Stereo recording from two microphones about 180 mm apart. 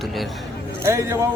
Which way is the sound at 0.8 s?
15° right (ahead or behind).